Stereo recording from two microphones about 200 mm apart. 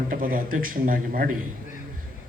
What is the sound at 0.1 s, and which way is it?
Speech, 45° right (ahead or behind).